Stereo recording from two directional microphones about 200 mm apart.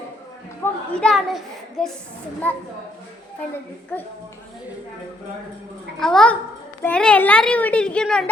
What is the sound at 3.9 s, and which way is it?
Speech, 10° left (ahead or behind).